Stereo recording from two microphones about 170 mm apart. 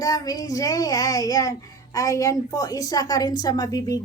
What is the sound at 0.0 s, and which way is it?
A woman's voice, 20° left (ahead or behind).